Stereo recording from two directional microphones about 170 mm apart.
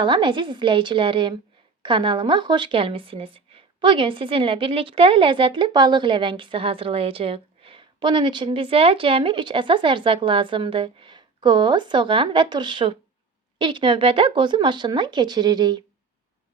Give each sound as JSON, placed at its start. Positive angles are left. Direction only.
{"t": 0.0, "sound": "speech", "side_deg": -30}